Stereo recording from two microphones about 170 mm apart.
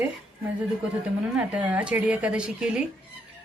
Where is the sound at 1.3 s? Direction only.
5° right (ahead or behind).